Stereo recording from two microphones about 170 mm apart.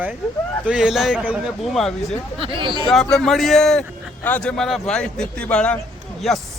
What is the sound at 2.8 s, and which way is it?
A man's voice, centre (ahead or behind).